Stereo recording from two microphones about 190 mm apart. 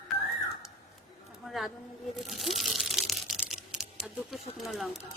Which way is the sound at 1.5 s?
Centre (ahead or behind).